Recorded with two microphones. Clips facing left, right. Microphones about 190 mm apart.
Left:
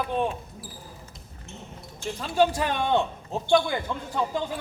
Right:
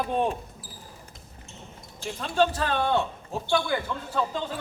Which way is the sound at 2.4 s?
15° left (ahead or behind).